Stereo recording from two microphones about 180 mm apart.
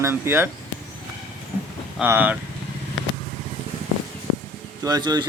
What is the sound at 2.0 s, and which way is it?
Speech, 10° right (ahead or behind).